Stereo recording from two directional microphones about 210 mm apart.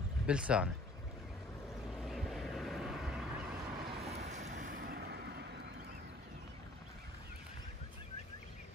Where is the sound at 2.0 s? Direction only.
Centre (ahead or behind).